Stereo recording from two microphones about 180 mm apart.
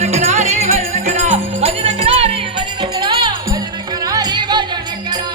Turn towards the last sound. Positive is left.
turn(degrees=-25)  # may be behind; listen again after turning